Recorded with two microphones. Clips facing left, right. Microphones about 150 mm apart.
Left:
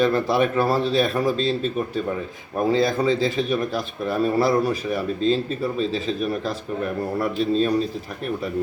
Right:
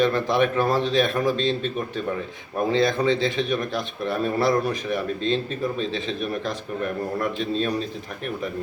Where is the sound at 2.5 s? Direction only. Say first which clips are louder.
Left 1 dB; 5° left (ahead or behind).